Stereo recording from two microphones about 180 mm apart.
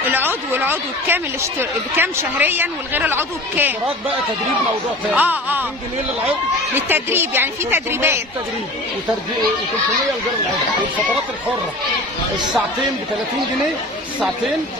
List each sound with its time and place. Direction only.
0.5 s speech: 10° right (ahead or behind)
5.1 s speech: 10° right (ahead or behind)